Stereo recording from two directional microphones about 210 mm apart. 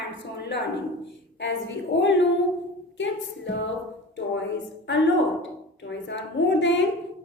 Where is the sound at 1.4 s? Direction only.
60° left (ahead or behind).